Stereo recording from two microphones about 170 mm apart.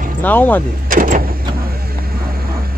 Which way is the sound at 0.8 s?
55° right (ahead or behind).